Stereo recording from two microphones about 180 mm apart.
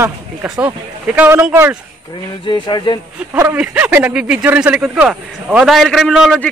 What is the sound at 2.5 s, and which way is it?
Speech, 25° left (ahead or behind).